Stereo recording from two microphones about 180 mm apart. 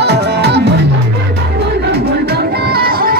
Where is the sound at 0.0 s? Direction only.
65° right (ahead or behind).